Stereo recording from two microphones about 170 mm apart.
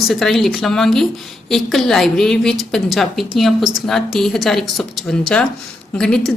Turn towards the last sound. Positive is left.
turn(degrees=5)  # may be behind; listen again after turning